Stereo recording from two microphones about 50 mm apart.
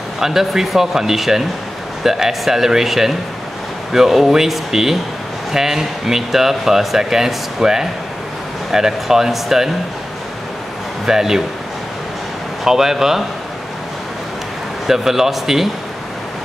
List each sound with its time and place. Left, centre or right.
0.2 s speech: centre
11.1 s speech: centre
12.6 s speech: centre
14.9 s speech: centre